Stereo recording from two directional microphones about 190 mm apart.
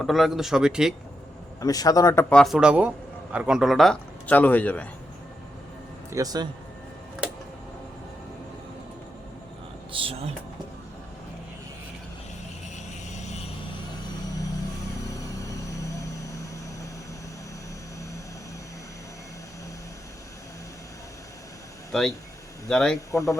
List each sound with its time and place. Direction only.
0.0 s a man's voice: centre (ahead or behind)
1.6 s a man's voice: 20° left (ahead or behind)
2.3 s a man's voice: centre (ahead or behind)
6.1 s speech: 20° right (ahead or behind)
9.9 s a sound: 30° right (ahead or behind)
21.9 s a man's voice: 5° left (ahead or behind)
23.0 s speech: 15° left (ahead or behind)